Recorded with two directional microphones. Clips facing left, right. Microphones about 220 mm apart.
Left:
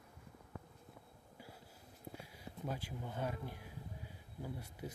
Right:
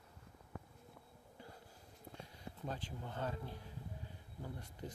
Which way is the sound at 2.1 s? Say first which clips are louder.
Even; 10° left (ahead or behind).